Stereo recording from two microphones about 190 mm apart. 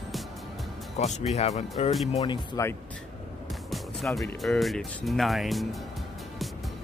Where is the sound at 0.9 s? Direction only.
40° left (ahead or behind).